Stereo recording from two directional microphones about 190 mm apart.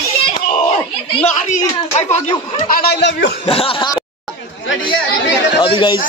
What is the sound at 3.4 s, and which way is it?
Speech, 30° left (ahead or behind).